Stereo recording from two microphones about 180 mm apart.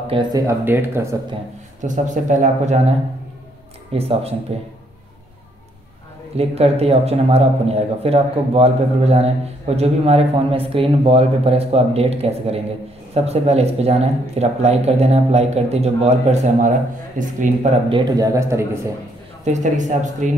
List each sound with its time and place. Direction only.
0.0 s speech: 25° right (ahead or behind)
1.8 s speech: 45° right (ahead or behind)
3.9 s speech: 35° right (ahead or behind)
6.3 s speech: 35° right (ahead or behind)
17.8 s speech: 25° right (ahead or behind)
19.4 s speech: 40° right (ahead or behind)